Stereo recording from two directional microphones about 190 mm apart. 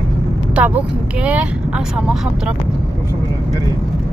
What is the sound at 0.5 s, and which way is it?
Speech, 5° right (ahead or behind).